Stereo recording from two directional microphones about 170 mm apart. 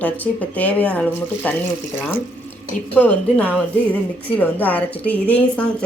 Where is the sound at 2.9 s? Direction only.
10° left (ahead or behind).